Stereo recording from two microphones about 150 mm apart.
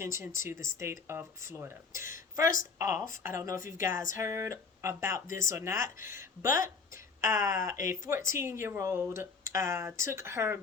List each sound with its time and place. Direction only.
0.0 s speech: 20° right (ahead or behind)